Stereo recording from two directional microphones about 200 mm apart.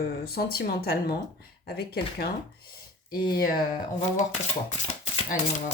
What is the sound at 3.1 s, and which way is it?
Speech, 20° left (ahead or behind).